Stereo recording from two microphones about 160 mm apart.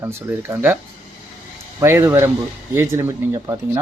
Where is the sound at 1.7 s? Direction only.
20° right (ahead or behind).